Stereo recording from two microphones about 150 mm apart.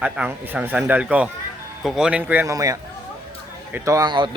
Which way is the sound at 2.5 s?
25° right (ahead or behind).